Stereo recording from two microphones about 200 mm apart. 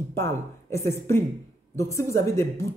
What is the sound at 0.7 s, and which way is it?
Speech, 15° left (ahead or behind).